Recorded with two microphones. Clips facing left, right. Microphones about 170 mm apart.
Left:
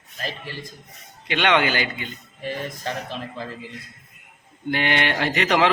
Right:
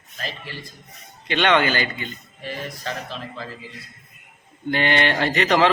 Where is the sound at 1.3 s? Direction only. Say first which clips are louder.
Right 1 dB; 15° left (ahead or behind).